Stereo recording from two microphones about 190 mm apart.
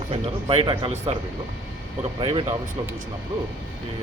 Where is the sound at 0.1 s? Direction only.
25° right (ahead or behind).